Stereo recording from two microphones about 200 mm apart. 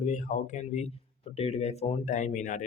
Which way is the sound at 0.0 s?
40° left (ahead or behind).